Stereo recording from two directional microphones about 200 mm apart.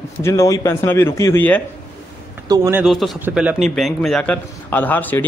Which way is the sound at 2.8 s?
Centre (ahead or behind).